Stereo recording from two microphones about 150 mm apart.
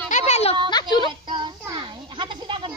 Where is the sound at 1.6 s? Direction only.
30° right (ahead or behind).